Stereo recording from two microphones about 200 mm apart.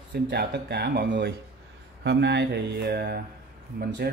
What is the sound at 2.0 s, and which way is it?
Mantra, 60° right (ahead or behind).